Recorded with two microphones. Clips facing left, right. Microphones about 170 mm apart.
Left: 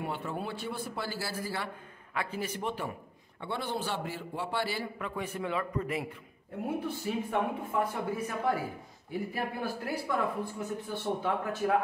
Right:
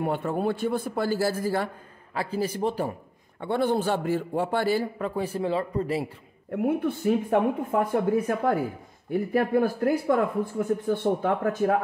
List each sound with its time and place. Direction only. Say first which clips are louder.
0.0 s a man's voice: right 9 dB; 55° right (ahead or behind)
2.1 s a man's voice: right 7 dB; 35° right (ahead or behind)
3.3 s a man's voice: right 10 dB; 50° right (ahead or behind); by 6.0 s 30° right (ahead or behind)
6.5 s a man's voice: right 9 dB; 60° right (ahead or behind)